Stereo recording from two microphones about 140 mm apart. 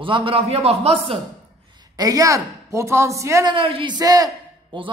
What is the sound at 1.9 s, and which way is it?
A woman's voice, 25° right (ahead or behind).